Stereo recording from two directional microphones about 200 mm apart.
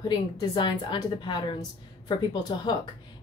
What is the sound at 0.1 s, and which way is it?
Speech, 25° left (ahead or behind).